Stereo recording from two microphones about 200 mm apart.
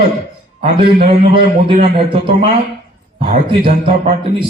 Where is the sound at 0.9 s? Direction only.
30° right (ahead or behind).